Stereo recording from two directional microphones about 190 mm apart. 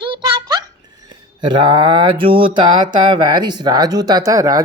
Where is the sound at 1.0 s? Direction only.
25° right (ahead or behind).